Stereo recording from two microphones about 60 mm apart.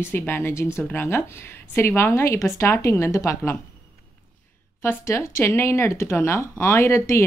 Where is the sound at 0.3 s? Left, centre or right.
Left.